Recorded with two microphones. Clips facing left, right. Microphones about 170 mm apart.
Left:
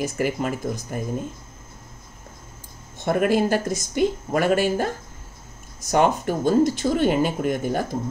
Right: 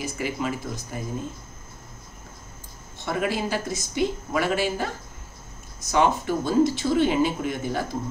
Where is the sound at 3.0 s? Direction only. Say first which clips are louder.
Left 7 dB; 50° left (ahead or behind).